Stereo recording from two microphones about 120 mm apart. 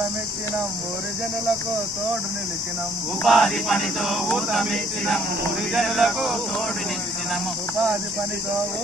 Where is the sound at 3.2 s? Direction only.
Centre (ahead or behind).